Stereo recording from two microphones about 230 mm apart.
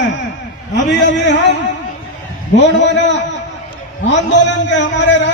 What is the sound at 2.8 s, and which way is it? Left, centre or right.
Speech, left.